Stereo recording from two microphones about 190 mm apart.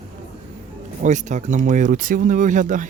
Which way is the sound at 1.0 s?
40° right (ahead or behind).